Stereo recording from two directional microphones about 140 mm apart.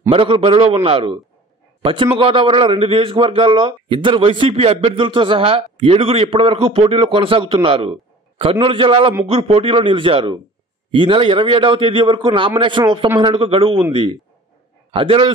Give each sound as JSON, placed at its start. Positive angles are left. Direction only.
{"t": 0.1, "sound": "a man's voice", "side_deg": -40}
{"t": 14.9, "sound": "a man's voice", "side_deg": -40}